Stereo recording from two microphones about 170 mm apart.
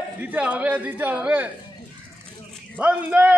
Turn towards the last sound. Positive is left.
turn(degrees=-10)  # may be behind; listen again after turning